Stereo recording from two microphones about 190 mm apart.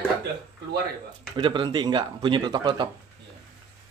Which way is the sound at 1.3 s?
25° right (ahead or behind).